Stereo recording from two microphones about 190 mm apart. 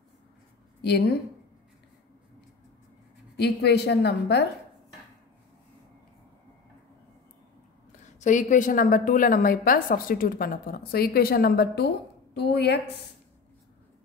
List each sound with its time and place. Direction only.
0.8 s a woman's voice: 60° left (ahead or behind)
3.3 s a woman's voice: 60° left (ahead or behind)
8.2 s a woman's voice: 40° left (ahead or behind); by 12.9 s 60° left (ahead or behind)